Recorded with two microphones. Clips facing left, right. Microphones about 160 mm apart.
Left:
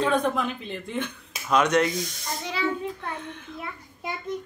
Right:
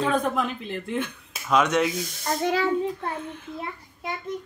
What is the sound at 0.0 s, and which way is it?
Speech, centre (ahead or behind).